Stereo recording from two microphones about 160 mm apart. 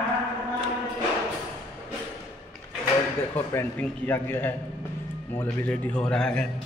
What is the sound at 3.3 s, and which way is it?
A man's voice, 10° left (ahead or behind).